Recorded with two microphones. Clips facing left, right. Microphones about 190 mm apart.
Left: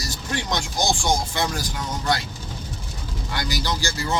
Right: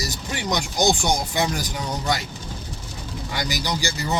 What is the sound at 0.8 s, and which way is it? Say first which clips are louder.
Speech: right 2 dB; 20° right (ahead or behind).